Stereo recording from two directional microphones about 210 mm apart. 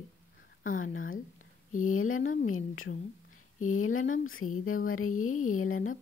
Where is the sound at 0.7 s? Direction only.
40° left (ahead or behind).